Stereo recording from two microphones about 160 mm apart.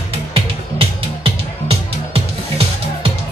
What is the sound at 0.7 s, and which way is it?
Music, 35° right (ahead or behind).